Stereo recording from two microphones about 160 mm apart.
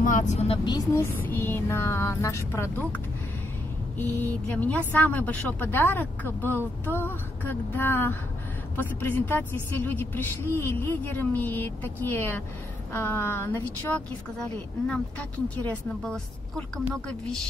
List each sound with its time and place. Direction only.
0.0 s speech: 50° left (ahead or behind)
0.7 s speech: 25° left (ahead or behind)
1.1 s a woman's voice: 10° left (ahead or behind)
4.0 s a woman's voice: 10° left (ahead or behind)